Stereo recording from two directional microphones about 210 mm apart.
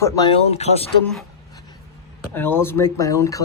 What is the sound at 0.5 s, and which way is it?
Speech, 30° left (ahead or behind).